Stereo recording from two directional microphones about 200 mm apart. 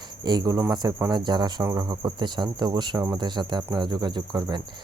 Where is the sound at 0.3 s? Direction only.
20° right (ahead or behind).